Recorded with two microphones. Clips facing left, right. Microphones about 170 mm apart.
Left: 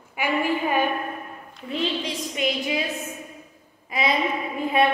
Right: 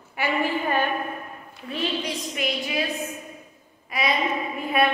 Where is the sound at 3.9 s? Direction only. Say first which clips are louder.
Left 2 dB; 25° left (ahead or behind).